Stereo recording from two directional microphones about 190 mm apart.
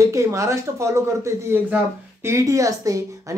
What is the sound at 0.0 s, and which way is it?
Speech, 15° right (ahead or behind).